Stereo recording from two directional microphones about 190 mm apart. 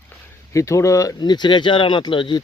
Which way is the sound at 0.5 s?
15° left (ahead or behind).